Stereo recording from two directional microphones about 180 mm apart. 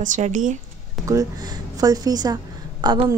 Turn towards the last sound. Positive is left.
turn(degrees=-30)  # may be behind; listen again after turning